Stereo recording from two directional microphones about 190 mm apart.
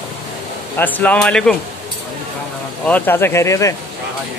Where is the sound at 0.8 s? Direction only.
10° left (ahead or behind).